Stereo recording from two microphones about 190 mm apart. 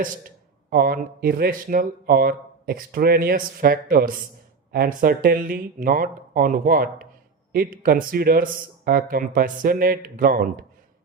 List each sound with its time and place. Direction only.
0.7 s speech: 50° right (ahead or behind)